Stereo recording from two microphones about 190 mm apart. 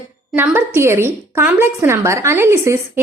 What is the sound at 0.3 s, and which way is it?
A woman's voice, 10° right (ahead or behind).